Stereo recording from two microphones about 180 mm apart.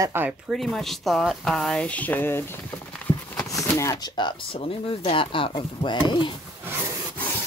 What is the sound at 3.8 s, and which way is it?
Speech, 20° left (ahead or behind).